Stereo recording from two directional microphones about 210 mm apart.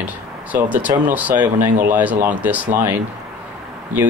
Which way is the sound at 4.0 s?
10° right (ahead or behind).